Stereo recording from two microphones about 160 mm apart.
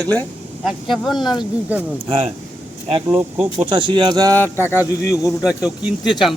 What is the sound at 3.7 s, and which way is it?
Speech, 30° right (ahead or behind).